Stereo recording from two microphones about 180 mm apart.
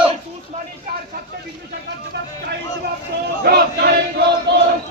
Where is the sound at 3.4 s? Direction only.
60° right (ahead or behind).